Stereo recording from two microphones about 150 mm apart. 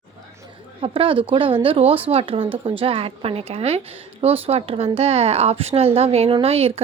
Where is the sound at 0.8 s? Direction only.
35° right (ahead or behind).